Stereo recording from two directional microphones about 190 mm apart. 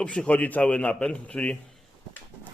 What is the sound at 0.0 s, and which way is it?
A man's voice, 5° left (ahead or behind).